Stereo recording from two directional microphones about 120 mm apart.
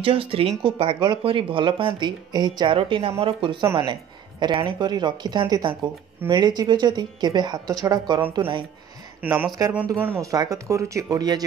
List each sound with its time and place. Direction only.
0.0 s a man's voice: 50° right (ahead or behind)
9.2 s speech: 15° right (ahead or behind)
10.3 s speech: 30° right (ahead or behind)